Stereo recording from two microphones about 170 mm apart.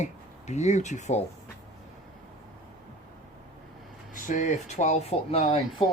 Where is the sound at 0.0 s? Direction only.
40° left (ahead or behind).